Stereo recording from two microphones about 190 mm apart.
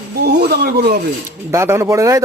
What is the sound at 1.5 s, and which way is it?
Speech, 15° right (ahead or behind).